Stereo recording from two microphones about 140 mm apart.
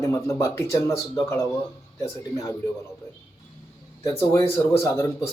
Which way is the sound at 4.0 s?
20° left (ahead or behind).